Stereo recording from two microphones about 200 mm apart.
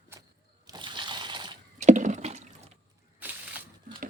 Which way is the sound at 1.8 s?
40° right (ahead or behind).